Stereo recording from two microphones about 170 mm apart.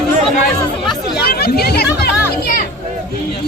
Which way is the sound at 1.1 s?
70° left (ahead or behind).